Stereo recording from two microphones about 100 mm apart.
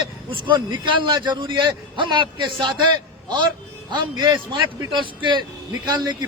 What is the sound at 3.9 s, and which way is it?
A man's voice, 45° right (ahead or behind).